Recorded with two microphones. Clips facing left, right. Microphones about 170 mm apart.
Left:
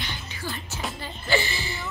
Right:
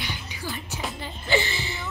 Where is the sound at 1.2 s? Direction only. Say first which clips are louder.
Right 1 dB; 20° right (ahead or behind).